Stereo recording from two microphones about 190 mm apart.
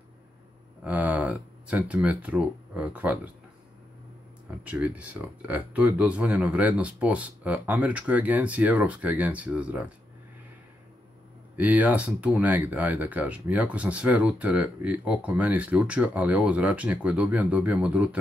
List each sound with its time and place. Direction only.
0.8 s speech: 10° right (ahead or behind)
4.6 s speech: 5° right (ahead or behind)
11.5 s speech: 10° right (ahead or behind)